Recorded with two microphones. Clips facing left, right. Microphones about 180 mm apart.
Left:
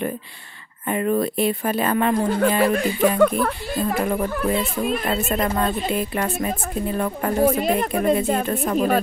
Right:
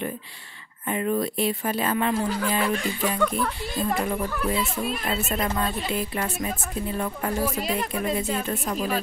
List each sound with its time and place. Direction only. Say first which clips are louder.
0.8 s speech: left 4 dB; 60° left (ahead or behind)